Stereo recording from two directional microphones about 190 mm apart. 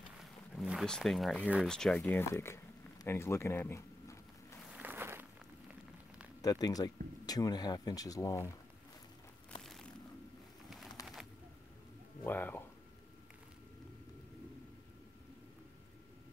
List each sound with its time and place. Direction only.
0.2 s speech: centre (ahead or behind); by 4.6 s 15° left (ahead or behind)
4.6 s a sound: 10° right (ahead or behind)
6.4 s speech: 20° left (ahead or behind)
9.6 s a sound: centre (ahead or behind)
11.0 s bird: 20° left (ahead or behind)
12.3 s speech: 10° left (ahead or behind)